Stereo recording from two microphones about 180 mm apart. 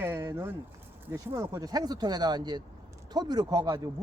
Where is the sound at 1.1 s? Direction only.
15° right (ahead or behind).